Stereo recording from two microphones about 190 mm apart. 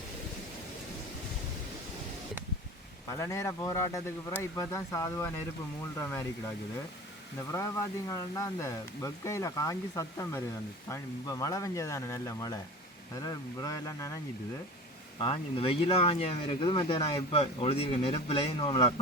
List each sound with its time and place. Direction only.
3.1 s speech: 15° left (ahead or behind)
7.5 s speech: 15° left (ahead or behind)
15.2 s speech: 30° left (ahead or behind)